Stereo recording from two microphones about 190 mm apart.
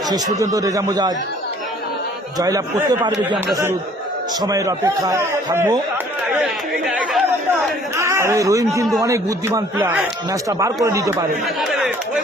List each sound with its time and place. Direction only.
0.1 s speech: 20° right (ahead or behind)
3.3 s a man's voice: 15° right (ahead or behind)
6.8 s speech: centre (ahead or behind)
7.9 s speech: 15° right (ahead or behind)
11.7 s chatter: centre (ahead or behind)